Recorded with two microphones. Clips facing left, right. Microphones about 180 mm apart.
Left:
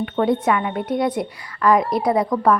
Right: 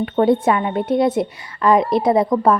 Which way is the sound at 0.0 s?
30° right (ahead or behind).